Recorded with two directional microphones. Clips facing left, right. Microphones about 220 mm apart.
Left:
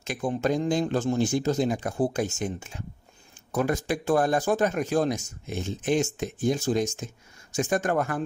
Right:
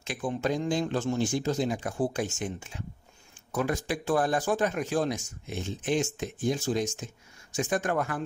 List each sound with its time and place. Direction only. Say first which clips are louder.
0.0 s speech: left 3 dB; 40° left (ahead or behind)